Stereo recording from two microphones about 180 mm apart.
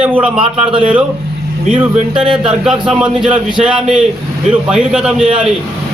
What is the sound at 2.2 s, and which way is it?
Speech, 30° right (ahead or behind).